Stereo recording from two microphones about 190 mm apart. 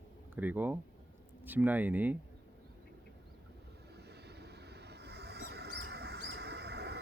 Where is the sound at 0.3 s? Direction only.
10° right (ahead or behind).